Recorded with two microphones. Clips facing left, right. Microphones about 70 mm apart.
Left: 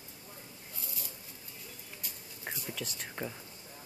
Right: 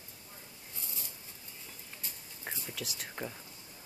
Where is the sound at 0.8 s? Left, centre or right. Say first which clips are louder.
Left 1 dB; right.